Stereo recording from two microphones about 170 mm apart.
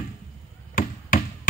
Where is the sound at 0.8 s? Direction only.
55° left (ahead or behind).